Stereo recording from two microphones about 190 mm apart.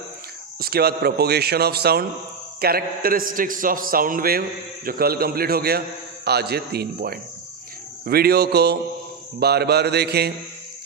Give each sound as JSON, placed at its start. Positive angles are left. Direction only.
{"t": 0.6, "sound": "a man's voice", "side_deg": -55}